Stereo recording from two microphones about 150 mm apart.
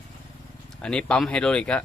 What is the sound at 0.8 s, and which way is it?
Speech, 5° left (ahead or behind).